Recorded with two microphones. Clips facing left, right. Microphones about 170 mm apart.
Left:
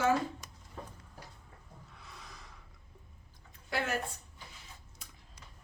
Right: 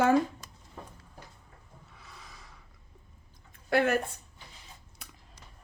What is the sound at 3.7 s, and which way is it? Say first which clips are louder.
Speech: right 9 dB; 60° right (ahead or behind).